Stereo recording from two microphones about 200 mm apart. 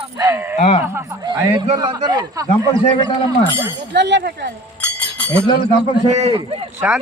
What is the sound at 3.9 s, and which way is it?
Speech, 60° right (ahead or behind).